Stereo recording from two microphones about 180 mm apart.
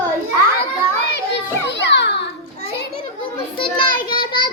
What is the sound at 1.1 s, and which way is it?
Children playing, 75° left (ahead or behind).